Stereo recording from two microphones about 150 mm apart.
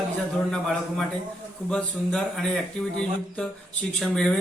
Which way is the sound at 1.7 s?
5° left (ahead or behind).